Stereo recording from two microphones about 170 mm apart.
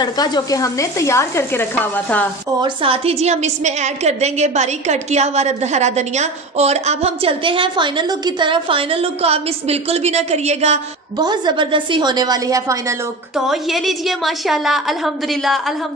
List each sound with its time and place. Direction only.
0.0 s sizzle: 25° left (ahead or behind)
2.6 s a woman's voice: 30° right (ahead or behind)
11.1 s a woman's voice: 25° right (ahead or behind)
13.5 s a woman's voice: centre (ahead or behind)